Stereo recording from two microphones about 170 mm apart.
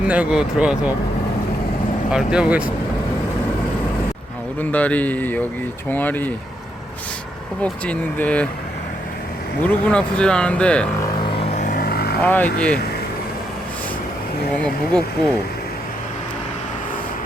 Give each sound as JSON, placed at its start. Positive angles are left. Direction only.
{"t": 0.0, "sound": "speech", "side_deg": -5}
{"t": 2.1, "sound": "speech", "side_deg": -5}
{"t": 4.6, "sound": "speech", "side_deg": 10}
{"t": 7.6, "sound": "speech", "side_deg": 10}
{"t": 9.6, "sound": "speech", "side_deg": 5}
{"t": 11.3, "sound": "vehicle", "side_deg": 45}
{"t": 12.2, "sound": "speech", "side_deg": 10}